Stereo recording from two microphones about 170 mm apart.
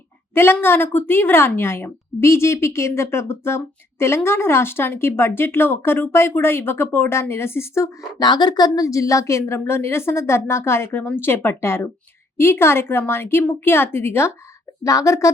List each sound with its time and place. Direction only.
0.3 s a woman's voice: 15° left (ahead or behind)